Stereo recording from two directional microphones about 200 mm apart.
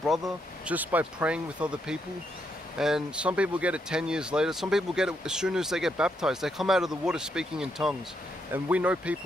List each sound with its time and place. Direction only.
0.7 s speech: 5° right (ahead or behind)